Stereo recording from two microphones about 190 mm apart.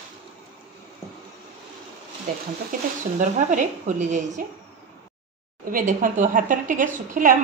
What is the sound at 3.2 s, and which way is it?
A woman's voice, 40° right (ahead or behind).